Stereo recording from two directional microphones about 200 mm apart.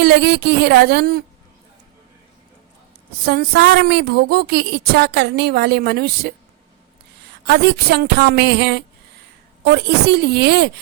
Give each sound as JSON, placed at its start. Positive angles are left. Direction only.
{"t": 0.0, "sound": "a woman's voice", "side_deg": -55}
{"t": 3.2, "sound": "a woman's voice", "side_deg": -50}
{"t": 7.4, "sound": "a woman's voice", "side_deg": -55}